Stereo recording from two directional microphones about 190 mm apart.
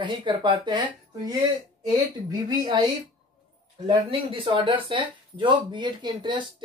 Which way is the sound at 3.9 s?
25° right (ahead or behind).